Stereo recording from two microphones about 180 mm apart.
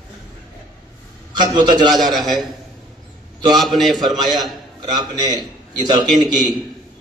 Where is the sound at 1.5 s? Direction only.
20° right (ahead or behind).